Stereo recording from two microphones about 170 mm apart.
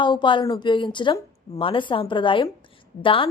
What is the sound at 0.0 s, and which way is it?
A woman's voice, 30° left (ahead or behind).